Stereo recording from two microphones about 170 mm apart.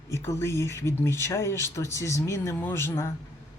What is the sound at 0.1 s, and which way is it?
Speech, 15° left (ahead or behind).